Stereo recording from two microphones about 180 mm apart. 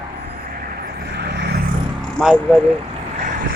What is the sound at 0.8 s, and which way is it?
Vehicle, 65° right (ahead or behind).